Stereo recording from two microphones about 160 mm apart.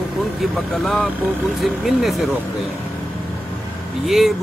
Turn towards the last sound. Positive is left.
turn(degrees=0)  # may be behind; listen again after turning